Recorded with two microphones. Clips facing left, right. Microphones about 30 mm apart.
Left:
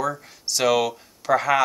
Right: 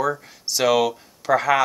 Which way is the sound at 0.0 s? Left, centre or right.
Centre.